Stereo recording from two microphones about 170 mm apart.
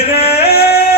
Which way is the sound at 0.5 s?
65° left (ahead or behind).